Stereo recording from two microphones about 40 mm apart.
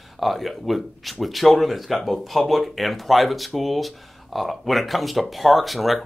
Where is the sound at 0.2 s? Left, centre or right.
Centre.